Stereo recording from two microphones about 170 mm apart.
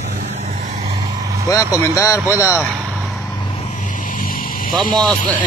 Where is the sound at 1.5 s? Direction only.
20° left (ahead or behind).